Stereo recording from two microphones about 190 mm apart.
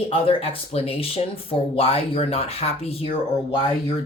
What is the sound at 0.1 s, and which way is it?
A woman's voice, 30° left (ahead or behind).